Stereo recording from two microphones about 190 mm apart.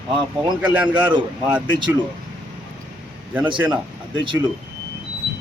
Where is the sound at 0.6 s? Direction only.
10° right (ahead or behind).